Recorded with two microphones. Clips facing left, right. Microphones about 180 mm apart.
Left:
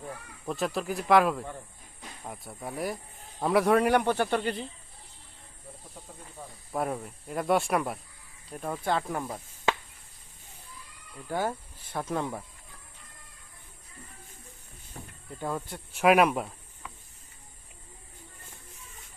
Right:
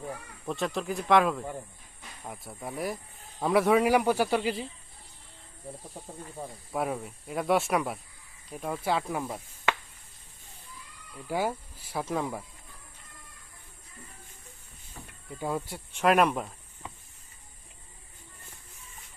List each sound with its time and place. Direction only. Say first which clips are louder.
0.4 s speech: left 1 dB; centre (ahead or behind)
6.7 s speech: even; centre (ahead or behind)
11.3 s speech: right 1 dB; 10° right (ahead or behind)
15.3 s speech: right 1 dB; 5° right (ahead or behind)
15.9 s speech: left 2 dB; 5° left (ahead or behind)
16.8 s a sound: right 2 dB; 25° right (ahead or behind)